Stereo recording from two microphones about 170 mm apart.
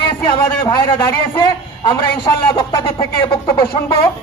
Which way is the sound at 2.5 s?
30° left (ahead or behind).